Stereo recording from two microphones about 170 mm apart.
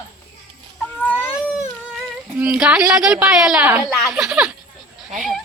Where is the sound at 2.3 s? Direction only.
5° right (ahead or behind).